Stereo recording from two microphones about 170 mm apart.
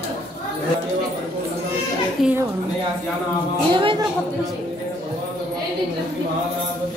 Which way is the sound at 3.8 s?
30° right (ahead or behind).